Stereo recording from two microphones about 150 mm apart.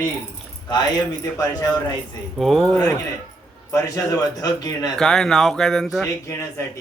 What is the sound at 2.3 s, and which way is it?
Speech, centre (ahead or behind).